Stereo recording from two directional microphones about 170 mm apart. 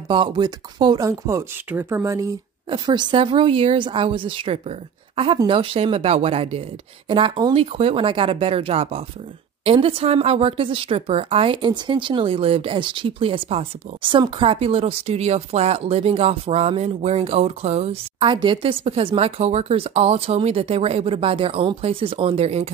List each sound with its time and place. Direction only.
0.1 s a woman's voice: 25° right (ahead or behind)